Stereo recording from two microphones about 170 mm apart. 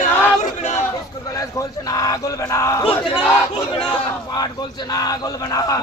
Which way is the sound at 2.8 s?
30° left (ahead or behind).